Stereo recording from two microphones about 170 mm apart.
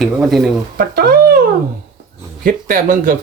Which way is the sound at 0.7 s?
60° right (ahead or behind).